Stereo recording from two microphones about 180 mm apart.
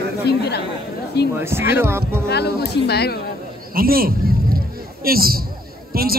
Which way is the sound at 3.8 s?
55° right (ahead or behind).